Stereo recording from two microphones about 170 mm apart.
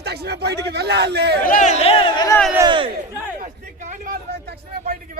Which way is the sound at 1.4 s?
50° left (ahead or behind).